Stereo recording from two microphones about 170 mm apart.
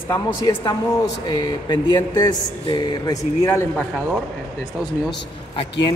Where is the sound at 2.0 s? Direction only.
25° left (ahead or behind).